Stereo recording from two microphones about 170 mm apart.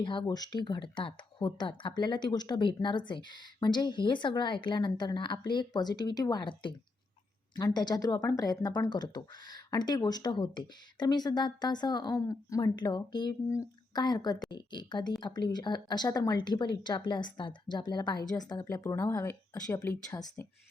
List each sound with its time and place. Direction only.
0.0 s speech: 30° left (ahead or behind)